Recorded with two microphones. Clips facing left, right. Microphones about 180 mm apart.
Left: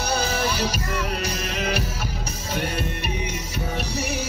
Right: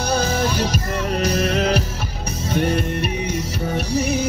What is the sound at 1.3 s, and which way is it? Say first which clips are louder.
Music: right 9 dB; 55° right (ahead or behind).